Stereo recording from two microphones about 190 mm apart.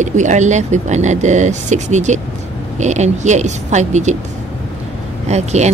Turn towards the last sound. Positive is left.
turn(degrees=-35)  # may be behind; listen again after turning